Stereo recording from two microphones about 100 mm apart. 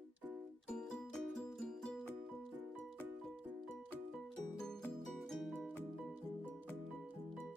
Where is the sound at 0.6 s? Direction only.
5° left (ahead or behind).